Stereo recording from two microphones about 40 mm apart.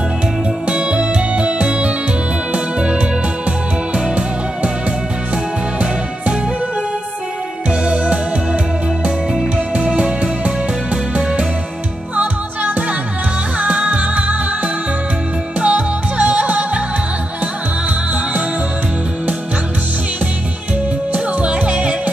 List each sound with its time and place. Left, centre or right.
0.7 s music: right
7.8 s music: right
9.8 s music: right
12.2 s music: right
21.1 s music: right